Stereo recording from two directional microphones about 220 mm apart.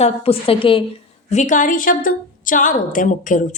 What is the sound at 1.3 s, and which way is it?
A woman's voice, 35° left (ahead or behind).